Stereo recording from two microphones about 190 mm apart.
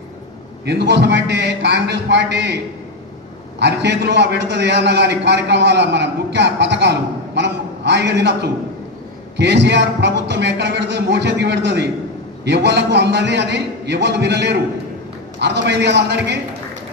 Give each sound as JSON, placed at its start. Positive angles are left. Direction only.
{"t": 0.7, "sound": "a man's voice", "side_deg": -65}